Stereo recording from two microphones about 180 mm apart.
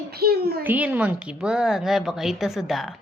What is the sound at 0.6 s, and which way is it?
A woman's voice, 10° right (ahead or behind).